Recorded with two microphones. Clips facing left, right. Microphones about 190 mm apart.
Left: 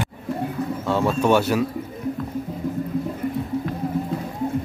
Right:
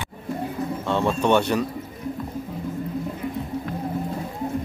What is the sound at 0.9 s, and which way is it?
Speech, 5° left (ahead or behind).